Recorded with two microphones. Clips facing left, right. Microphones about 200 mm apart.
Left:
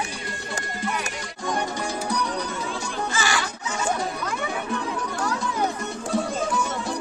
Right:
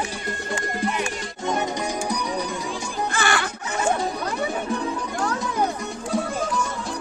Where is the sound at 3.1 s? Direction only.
55° right (ahead or behind).